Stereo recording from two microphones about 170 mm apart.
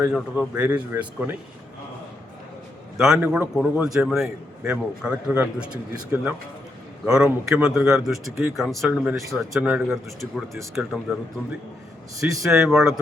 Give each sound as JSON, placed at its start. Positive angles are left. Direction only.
{"t": 0.1, "sound": "speech", "side_deg": -5}
{"t": 3.0, "sound": "a man's voice", "side_deg": -5}
{"t": 12.2, "sound": "a man's voice", "side_deg": -5}